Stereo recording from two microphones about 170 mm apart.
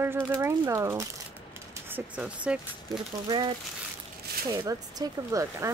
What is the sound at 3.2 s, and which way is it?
Speech, 25° right (ahead or behind).